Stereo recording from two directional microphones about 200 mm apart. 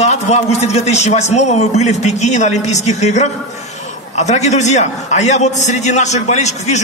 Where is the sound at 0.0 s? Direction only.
35° left (ahead or behind).